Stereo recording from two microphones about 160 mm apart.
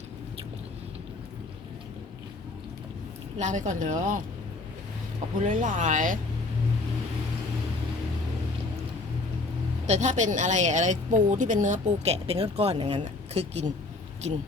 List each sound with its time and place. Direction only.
3.3 s a woman's voice: 50° right (ahead or behind)
5.4 s a woman's voice: 55° right (ahead or behind)
9.8 s a woman's voice: 45° right (ahead or behind)